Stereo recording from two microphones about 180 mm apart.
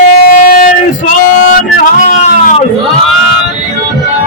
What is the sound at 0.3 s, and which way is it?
Male singing, 50° left (ahead or behind).